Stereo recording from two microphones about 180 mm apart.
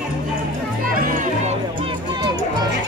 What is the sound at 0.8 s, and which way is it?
Music, 50° right (ahead or behind).